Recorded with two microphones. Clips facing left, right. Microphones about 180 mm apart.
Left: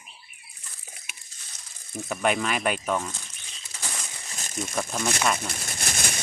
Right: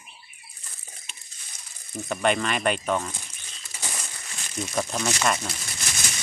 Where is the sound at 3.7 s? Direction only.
10° right (ahead or behind).